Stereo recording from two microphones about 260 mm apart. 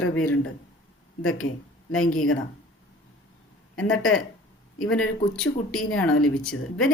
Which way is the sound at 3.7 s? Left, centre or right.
Left.